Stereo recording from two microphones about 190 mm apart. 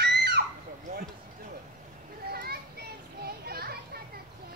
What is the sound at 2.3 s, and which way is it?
Children playing, 55° right (ahead or behind).